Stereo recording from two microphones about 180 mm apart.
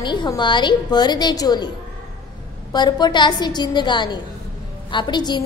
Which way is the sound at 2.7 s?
25° left (ahead or behind).